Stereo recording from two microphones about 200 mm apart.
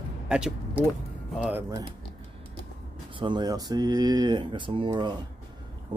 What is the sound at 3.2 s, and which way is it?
Speech, 20° right (ahead or behind).